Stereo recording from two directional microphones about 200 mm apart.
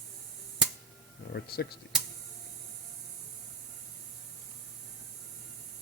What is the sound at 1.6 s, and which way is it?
Speech, 55° left (ahead or behind).